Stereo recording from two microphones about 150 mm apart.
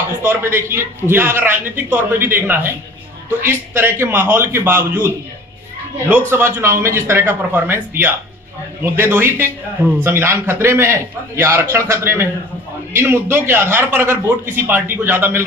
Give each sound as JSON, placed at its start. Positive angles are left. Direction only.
{"t": 0.2, "sound": "a man's voice", "side_deg": -15}